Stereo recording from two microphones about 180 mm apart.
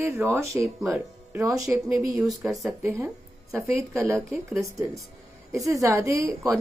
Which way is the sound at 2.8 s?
15° right (ahead or behind).